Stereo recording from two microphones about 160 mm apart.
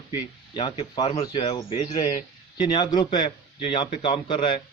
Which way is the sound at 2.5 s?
30° left (ahead or behind).